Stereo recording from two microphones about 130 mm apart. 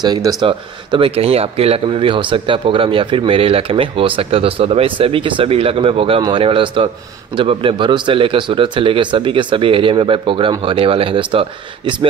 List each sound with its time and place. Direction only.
0.0 s speech: 30° right (ahead or behind)
0.5 s speech: 45° right (ahead or behind)